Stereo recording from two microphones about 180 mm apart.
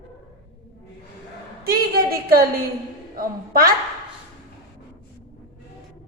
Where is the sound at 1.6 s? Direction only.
55° right (ahead or behind).